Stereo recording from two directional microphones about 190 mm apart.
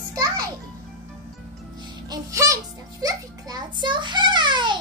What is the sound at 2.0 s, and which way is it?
Music, 15° right (ahead or behind).